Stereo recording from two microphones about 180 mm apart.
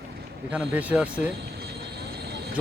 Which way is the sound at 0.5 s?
10° right (ahead or behind).